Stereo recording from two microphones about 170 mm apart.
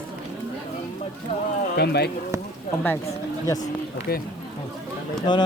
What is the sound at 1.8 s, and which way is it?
Speech, 70° left (ahead or behind).